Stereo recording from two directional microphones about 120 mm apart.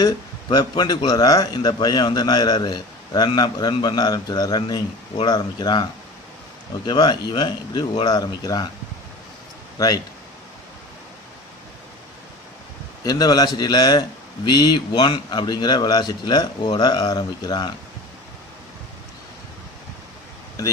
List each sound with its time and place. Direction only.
0.0 s a man's voice: 35° left (ahead or behind)
6.9 s a man's voice: 35° left (ahead or behind)
9.8 s speech: 30° left (ahead or behind)
13.0 s a man's voice: 35° left (ahead or behind)